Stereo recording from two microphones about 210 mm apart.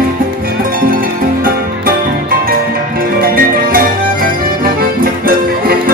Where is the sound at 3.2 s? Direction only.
45° right (ahead or behind).